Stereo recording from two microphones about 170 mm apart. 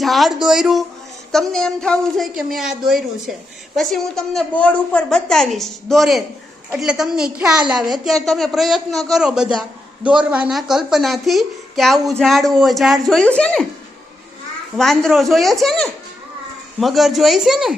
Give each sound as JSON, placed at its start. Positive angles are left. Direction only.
{"t": 0.0, "sound": "a man's voice", "side_deg": 0}
{"t": 7.8, "sound": "a woman's voice", "side_deg": -25}
{"t": 8.0, "sound": "a man's voice", "side_deg": 0}
{"t": 14.8, "sound": "a man's voice", "side_deg": 0}